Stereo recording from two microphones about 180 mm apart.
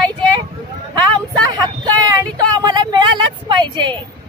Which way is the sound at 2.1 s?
20° right (ahead or behind).